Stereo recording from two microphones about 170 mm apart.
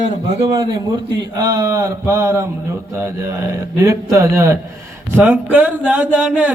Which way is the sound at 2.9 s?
15° right (ahead or behind).